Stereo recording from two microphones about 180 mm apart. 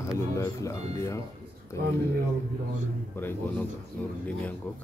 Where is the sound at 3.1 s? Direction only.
10° left (ahead or behind).